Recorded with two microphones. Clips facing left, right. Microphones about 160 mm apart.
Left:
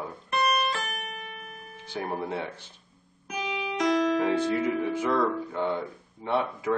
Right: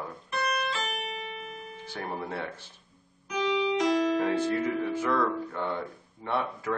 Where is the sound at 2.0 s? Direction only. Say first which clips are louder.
Left 4 dB; 5° left (ahead or behind).